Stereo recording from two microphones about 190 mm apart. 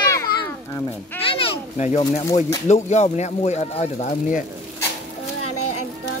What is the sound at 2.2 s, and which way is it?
Speech, 15° left (ahead or behind).